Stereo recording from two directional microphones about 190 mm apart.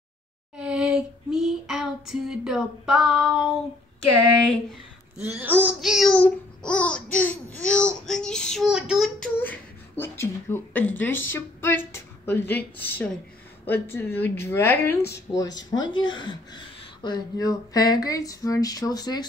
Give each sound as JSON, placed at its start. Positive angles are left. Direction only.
{"t": 0.6, "sound": "child singing", "side_deg": -5}
{"t": 5.4, "sound": "child singing", "side_deg": -10}
{"t": 9.4, "sound": "a woman's voice", "side_deg": 10}
{"t": 15.8, "sound": "speech", "side_deg": 25}